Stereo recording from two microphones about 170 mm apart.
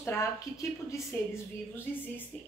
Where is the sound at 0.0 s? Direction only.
15° left (ahead or behind).